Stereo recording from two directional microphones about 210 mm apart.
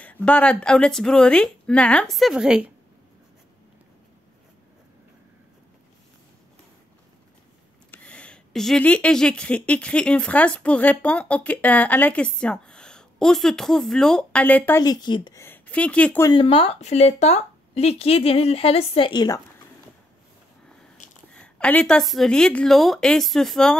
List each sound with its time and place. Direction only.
0.0 s speech: 5° left (ahead or behind)
7.9 s speech: 5° left (ahead or behind)
16.3 s speech: 25° left (ahead or behind)
21.4 s speech: 5° left (ahead or behind)